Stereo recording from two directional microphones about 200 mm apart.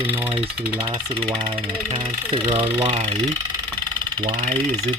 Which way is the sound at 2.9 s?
30° right (ahead or behind).